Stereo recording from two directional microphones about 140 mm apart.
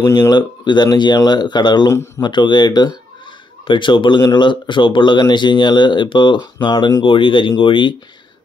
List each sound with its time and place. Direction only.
0.0 s speech: 25° left (ahead or behind)
1.9 s speech: 20° left (ahead or behind)
2.2 s speech: 35° left (ahead or behind)